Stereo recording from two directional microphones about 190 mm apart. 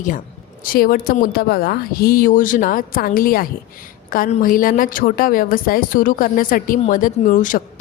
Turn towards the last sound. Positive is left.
turn(degrees=45)  # may be behind; listen again after turning